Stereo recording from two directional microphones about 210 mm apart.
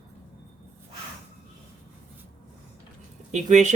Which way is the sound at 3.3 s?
35° right (ahead or behind).